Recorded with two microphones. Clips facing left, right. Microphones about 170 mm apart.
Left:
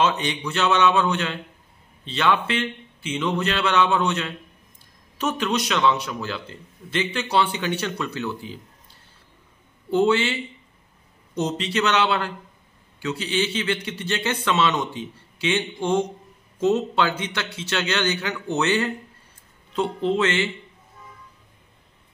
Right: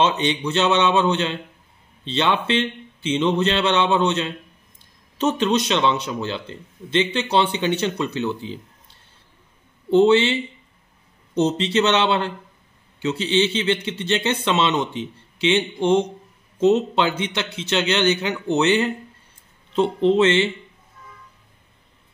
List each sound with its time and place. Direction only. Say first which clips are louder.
0.0 s a man's voice: right 3 dB; 25° right (ahead or behind)
9.8 s a man's voice: right 5 dB; 25° right (ahead or behind)